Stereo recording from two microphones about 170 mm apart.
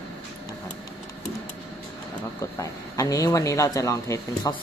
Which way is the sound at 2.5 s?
20° left (ahead or behind).